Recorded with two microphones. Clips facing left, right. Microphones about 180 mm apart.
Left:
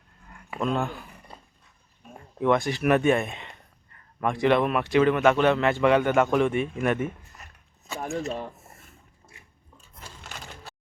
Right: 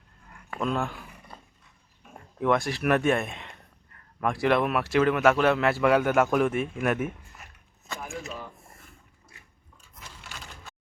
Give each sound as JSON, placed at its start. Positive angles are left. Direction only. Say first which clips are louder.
{"t": 0.6, "sound": "speech", "louder": "left 2 dB", "side_deg": 0}
{"t": 1.3, "sound": "dog", "louder": "even", "side_deg": 10}
{"t": 2.4, "sound": "speech", "louder": "left 2 dB", "side_deg": 0}
{"t": 7.9, "sound": "speech", "louder": "left 7 dB", "side_deg": 40}
{"t": 10.2, "sound": "a sound", "louder": "left 3 dB", "side_deg": 35}